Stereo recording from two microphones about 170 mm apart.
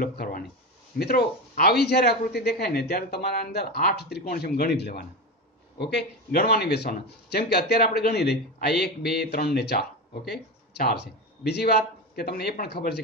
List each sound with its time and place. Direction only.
0.0 s speech: 55° left (ahead or behind)
0.9 s speech: 65° left (ahead or behind)
5.8 s speech: 80° left